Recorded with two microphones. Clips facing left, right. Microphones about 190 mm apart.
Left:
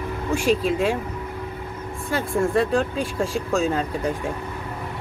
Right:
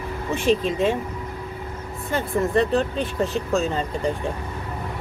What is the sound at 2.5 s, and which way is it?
Speech, 5° left (ahead or behind).